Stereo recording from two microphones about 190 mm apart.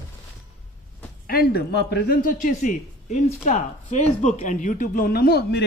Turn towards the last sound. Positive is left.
turn(degrees=55)  # may be behind; listen again after turning